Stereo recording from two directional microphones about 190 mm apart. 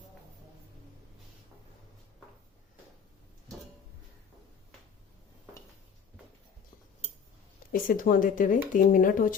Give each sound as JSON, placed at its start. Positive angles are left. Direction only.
{"t": 7.7, "sound": "speech", "side_deg": 45}